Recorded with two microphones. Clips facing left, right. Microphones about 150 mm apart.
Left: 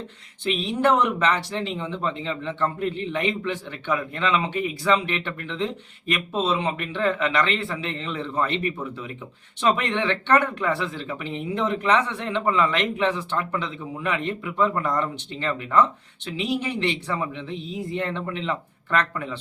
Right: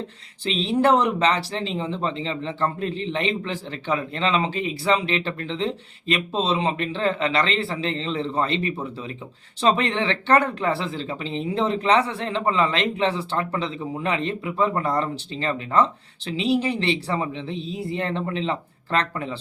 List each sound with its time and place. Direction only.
0.6 s a man's voice: 30° right (ahead or behind)
17.6 s a sound: 80° right
17.9 s a man's voice: 25° right (ahead or behind)